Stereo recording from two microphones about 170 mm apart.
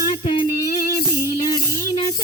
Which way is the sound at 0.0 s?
30° left (ahead or behind).